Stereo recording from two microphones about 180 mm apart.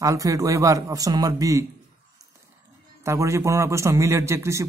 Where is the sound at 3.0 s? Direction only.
15° right (ahead or behind).